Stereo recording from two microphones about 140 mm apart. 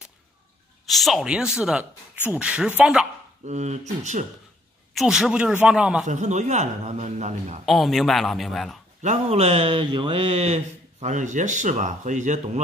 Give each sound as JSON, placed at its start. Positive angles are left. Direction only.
{"t": 0.8, "sound": "a man's voice", "side_deg": 0}
{"t": 3.4, "sound": "a man's voice", "side_deg": -55}
{"t": 4.9, "sound": "a man's voice", "side_deg": 0}
{"t": 6.0, "sound": "a man's voice", "side_deg": -60}
{"t": 7.6, "sound": "a man's voice", "side_deg": 0}
{"t": 9.0, "sound": "speech", "side_deg": -50}